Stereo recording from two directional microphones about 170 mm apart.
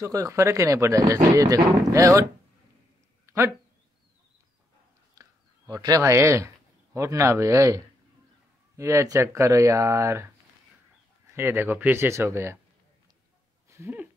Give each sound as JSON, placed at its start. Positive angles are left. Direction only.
{"t": 0.0, "sound": "speech", "side_deg": -20}
{"t": 3.3, "sound": "a sound", "side_deg": -15}
{"t": 5.1, "sound": "speech", "side_deg": -20}
{"t": 11.3, "sound": "speech", "side_deg": -15}
{"t": 13.7, "sound": "speech", "side_deg": -15}